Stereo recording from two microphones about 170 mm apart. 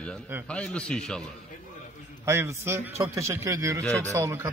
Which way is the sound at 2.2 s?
15° right (ahead or behind).